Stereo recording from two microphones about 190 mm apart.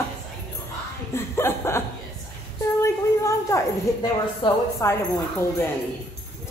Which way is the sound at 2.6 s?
15° left (ahead or behind).